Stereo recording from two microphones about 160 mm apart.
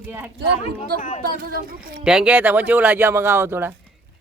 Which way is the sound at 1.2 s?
65° right (ahead or behind).